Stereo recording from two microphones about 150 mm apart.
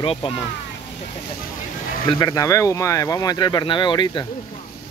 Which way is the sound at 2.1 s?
25° left (ahead or behind).